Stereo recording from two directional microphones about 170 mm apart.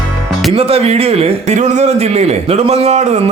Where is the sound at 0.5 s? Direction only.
35° right (ahead or behind).